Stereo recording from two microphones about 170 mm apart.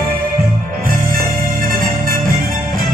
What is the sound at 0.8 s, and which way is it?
Music, 55° right (ahead or behind).